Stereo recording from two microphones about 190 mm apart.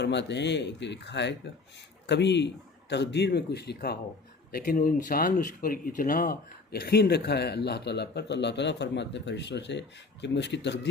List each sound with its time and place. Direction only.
0.0 s speech: 65° left (ahead or behind)